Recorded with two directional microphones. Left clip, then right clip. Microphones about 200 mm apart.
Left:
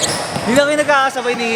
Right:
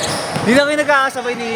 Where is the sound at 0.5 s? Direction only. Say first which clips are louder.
Even; 40° right (ahead or behind).